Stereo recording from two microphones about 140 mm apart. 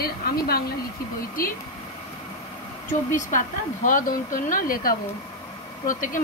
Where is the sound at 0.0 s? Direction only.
90° left.